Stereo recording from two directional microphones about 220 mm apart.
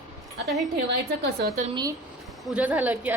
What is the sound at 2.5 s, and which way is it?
Speech, 5° right (ahead or behind).